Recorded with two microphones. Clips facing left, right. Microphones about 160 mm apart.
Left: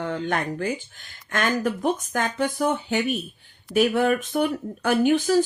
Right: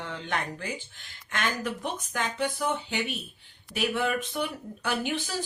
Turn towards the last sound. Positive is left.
turn(degrees=45)  # may be behind; listen again after turning